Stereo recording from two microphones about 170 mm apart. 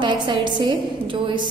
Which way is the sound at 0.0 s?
30° right (ahead or behind).